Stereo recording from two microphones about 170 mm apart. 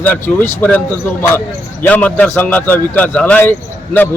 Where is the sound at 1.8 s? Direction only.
10° left (ahead or behind).